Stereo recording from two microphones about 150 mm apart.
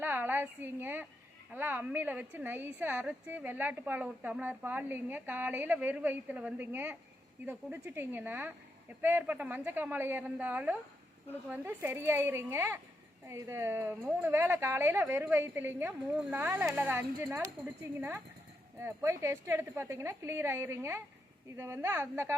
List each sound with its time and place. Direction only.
0.0 s a woman's voice: 10° right (ahead or behind)
18.8 s a woman's voice: 15° right (ahead or behind)